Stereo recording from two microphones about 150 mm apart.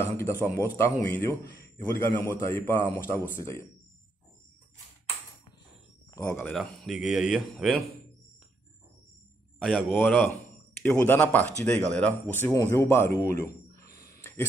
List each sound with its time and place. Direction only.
0.0 s a man's voice: 15° left (ahead or behind)
6.1 s speech: 20° left (ahead or behind)
6.4 s speech: 5° left (ahead or behind)
9.6 s a man's voice: centre (ahead or behind); by 13.8 s 20° left (ahead or behind)
13.9 s a sound: 20° left (ahead or behind)